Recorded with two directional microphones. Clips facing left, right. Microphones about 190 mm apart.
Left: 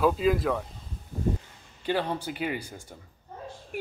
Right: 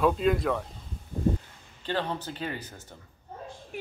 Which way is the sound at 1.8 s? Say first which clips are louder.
Left 3 dB; 10° left (ahead or behind).